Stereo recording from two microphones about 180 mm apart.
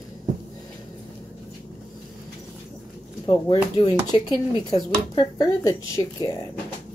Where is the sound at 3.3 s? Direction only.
25° left (ahead or behind).